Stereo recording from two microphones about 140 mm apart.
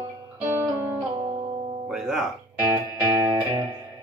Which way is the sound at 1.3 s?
45° right (ahead or behind).